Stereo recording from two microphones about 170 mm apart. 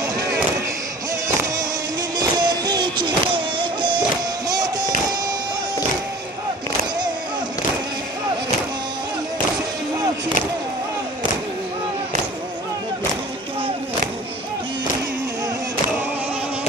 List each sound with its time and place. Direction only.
2.1 s music: 25° right (ahead or behind)